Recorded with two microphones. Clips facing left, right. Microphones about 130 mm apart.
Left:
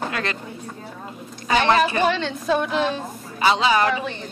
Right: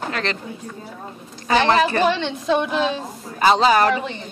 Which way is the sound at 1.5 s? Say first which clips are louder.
Right 1 dB; 35° right (ahead or behind).